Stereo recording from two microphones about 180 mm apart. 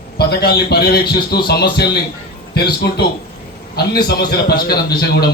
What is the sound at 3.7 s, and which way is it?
A man's voice, 60° left (ahead or behind).